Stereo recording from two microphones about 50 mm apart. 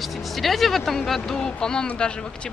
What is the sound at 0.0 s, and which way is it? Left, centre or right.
Speech, centre.